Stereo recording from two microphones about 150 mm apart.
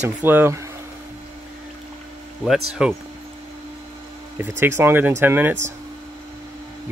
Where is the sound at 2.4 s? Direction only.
5° right (ahead or behind).